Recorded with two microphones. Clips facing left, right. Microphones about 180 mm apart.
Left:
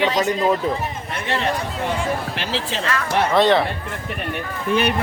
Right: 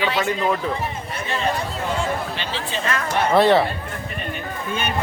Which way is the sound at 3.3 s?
5° right (ahead or behind).